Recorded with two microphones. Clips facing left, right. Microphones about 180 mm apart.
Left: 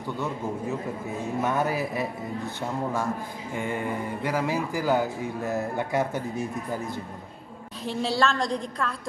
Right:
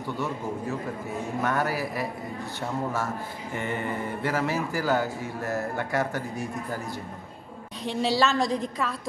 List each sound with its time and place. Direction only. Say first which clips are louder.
1.4 s a man's voice: left 1 dB; 20° left (ahead or behind)
7.8 s a woman's voice: right 1 dB; centre (ahead or behind)